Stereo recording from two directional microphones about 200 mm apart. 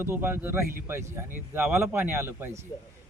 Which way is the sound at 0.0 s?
10° right (ahead or behind).